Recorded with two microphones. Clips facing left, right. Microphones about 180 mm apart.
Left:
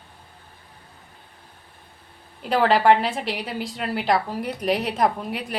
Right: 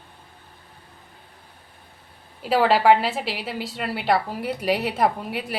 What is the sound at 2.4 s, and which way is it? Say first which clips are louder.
A woman's voice: even; 5° right (ahead or behind).